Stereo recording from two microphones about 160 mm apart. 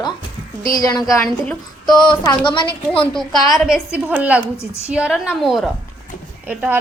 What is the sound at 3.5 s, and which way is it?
A woman's voice, centre (ahead or behind).